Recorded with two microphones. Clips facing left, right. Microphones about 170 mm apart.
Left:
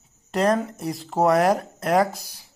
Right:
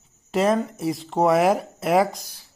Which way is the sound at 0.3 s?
Centre (ahead or behind).